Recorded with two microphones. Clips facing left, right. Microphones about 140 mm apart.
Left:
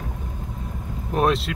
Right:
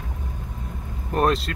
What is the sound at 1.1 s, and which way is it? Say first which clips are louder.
Vehicle: even; centre (ahead or behind).